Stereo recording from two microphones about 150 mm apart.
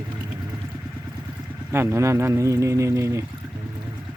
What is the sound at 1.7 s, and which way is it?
Speech, 15° right (ahead or behind).